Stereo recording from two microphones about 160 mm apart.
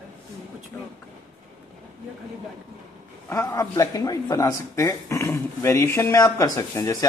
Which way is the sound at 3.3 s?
20° left (ahead or behind).